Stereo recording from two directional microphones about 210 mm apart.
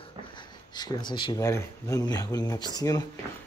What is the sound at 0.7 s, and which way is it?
Speech, 20° left (ahead or behind).